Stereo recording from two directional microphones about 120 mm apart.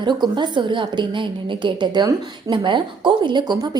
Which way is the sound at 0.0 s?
40° right (ahead or behind).